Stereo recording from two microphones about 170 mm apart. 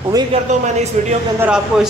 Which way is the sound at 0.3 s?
40° right (ahead or behind).